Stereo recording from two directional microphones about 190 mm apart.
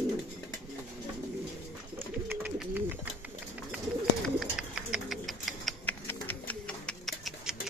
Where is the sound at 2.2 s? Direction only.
5° right (ahead or behind).